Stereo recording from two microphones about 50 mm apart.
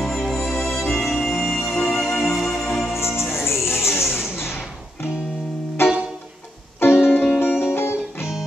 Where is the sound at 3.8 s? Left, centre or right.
Left.